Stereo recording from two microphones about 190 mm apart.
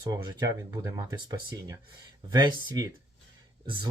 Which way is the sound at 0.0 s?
25° right (ahead or behind).